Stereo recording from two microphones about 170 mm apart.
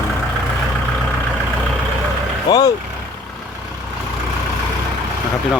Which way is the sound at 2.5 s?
25° left (ahead or behind).